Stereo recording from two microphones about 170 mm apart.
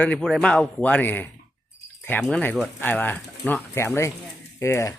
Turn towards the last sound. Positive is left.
turn(degrees=15)  # may be behind; listen again after turning